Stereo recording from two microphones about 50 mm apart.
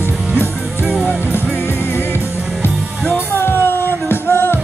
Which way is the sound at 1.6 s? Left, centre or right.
Left.